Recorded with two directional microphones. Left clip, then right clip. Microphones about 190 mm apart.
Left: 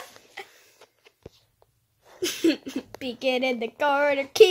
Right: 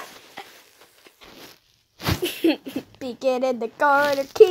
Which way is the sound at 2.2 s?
20° left (ahead or behind).